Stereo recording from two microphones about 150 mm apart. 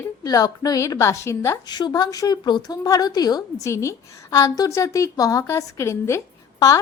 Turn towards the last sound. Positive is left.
turn(degrees=20)  # may be behind; listen again after turning